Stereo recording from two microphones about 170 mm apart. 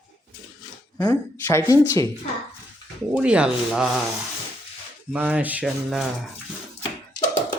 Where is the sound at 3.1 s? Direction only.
5° right (ahead or behind).